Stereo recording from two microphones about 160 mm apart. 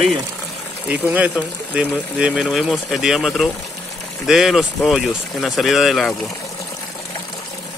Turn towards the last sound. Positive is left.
turn(degrees=0)  # may be behind; listen again after turning